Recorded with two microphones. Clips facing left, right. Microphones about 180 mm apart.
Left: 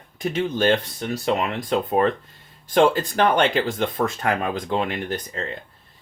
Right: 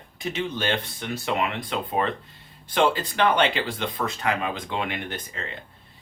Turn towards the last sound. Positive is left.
turn(degrees=40)  # may be behind; listen again after turning